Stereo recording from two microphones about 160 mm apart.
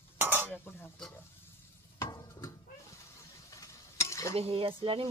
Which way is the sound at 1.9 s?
20° left (ahead or behind).